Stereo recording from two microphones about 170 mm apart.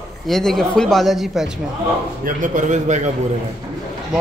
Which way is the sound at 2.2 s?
50° right (ahead or behind).